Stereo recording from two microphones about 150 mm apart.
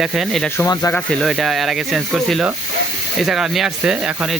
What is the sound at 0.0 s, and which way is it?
Speech, centre (ahead or behind).